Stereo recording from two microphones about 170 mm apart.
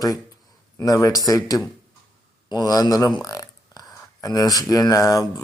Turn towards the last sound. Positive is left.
turn(degrees=20)  # may be behind; listen again after turning